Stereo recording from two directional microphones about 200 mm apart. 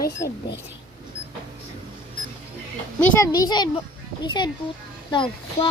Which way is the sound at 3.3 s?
20° left (ahead or behind).